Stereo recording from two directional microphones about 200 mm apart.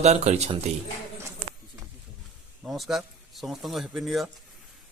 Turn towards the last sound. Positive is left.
turn(degrees=0)  # may be behind; listen again after turning